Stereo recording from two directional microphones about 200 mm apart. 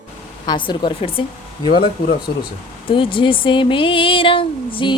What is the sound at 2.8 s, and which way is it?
Speech, 25° left (ahead or behind).